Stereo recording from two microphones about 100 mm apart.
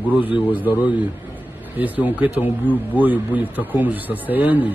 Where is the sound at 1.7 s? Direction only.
15° right (ahead or behind).